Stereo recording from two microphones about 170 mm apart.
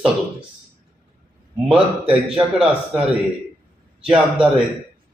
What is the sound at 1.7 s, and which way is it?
Speech, 5° right (ahead or behind).